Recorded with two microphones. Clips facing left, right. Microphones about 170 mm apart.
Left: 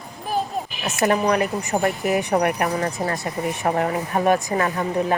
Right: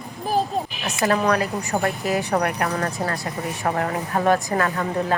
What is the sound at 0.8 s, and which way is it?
A woman's voice, 20° left (ahead or behind).